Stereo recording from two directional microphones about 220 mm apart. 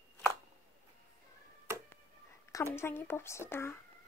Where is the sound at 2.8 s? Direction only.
10° left (ahead or behind).